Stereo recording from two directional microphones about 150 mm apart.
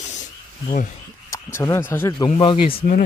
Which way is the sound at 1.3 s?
20° left (ahead or behind).